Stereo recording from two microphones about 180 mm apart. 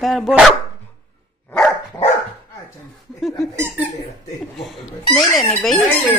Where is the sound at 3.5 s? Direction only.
10° right (ahead or behind).